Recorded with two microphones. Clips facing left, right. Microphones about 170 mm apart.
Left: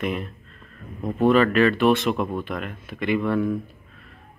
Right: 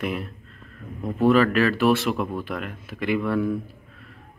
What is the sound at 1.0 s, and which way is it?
Speech, 15° left (ahead or behind).